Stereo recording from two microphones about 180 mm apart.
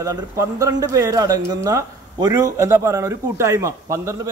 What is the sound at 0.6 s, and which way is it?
A man's voice, 20° right (ahead or behind).